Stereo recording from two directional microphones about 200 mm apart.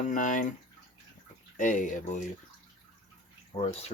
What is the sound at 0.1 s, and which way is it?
Speech, 40° left (ahead or behind).